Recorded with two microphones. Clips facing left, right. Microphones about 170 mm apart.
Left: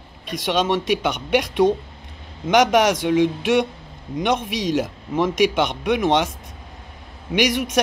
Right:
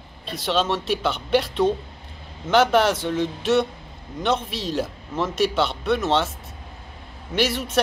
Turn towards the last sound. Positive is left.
turn(degrees=10)  # may be behind; listen again after turning